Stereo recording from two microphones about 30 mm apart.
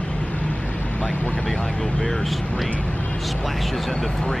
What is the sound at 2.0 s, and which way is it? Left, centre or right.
Speech, centre.